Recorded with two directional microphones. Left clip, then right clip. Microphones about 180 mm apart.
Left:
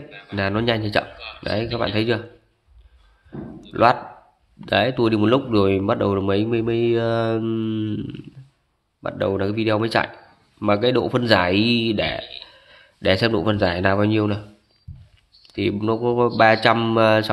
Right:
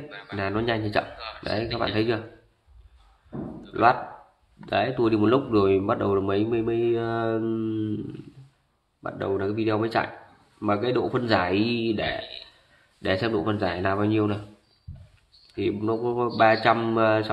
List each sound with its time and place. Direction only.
0.4 s speech: 45° left (ahead or behind)
3.7 s speech: 50° left (ahead or behind)
9.0 s speech: 45° left (ahead or behind)
15.5 s speech: 50° left (ahead or behind)